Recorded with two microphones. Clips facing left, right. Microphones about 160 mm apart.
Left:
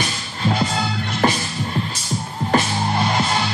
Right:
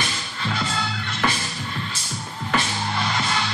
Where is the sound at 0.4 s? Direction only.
35° left (ahead or behind).